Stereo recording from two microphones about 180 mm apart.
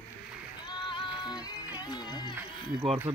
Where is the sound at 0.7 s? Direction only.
25° left (ahead or behind).